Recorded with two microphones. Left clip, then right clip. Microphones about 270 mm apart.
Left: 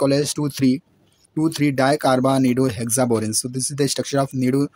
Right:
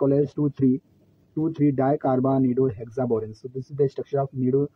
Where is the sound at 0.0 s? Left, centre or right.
Left.